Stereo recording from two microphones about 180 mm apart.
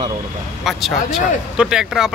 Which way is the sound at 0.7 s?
Centre (ahead or behind).